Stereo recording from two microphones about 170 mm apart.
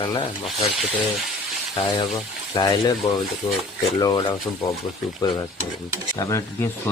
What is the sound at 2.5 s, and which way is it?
Speech, 30° left (ahead or behind).